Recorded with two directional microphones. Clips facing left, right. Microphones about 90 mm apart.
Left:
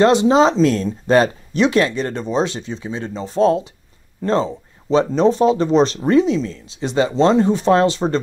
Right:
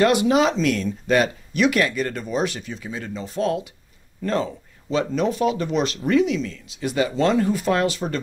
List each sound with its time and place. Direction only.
0.0 s speech: 25° left (ahead or behind)